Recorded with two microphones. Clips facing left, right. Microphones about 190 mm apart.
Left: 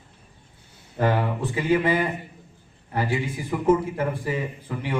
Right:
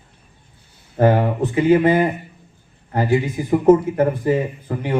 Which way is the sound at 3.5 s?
40° right (ahead or behind).